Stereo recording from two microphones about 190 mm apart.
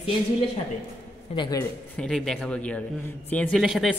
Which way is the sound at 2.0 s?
5° left (ahead or behind).